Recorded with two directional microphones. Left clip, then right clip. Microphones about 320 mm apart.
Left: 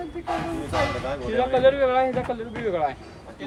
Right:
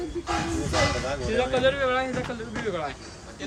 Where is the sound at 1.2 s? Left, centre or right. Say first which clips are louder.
Left 4 dB; left.